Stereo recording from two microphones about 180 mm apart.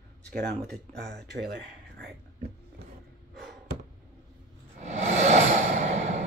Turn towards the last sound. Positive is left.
turn(degrees=-40)  # may be behind; listen again after turning